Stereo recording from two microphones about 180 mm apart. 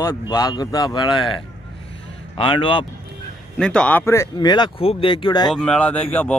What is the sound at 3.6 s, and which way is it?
Speech, 5° left (ahead or behind).